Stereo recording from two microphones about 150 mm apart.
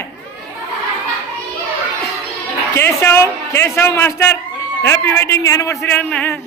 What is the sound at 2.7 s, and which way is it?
A man's voice, 15° left (ahead or behind).